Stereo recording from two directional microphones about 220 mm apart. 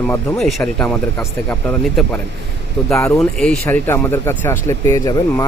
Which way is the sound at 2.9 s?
10° left (ahead or behind).